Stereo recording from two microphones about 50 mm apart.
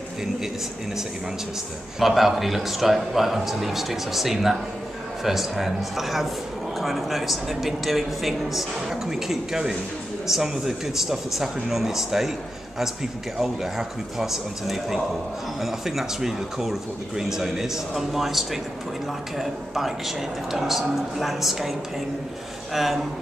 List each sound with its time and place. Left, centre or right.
2.0 s speech: centre